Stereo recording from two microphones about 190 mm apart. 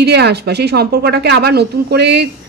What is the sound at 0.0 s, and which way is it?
A man's voice, 60° right (ahead or behind).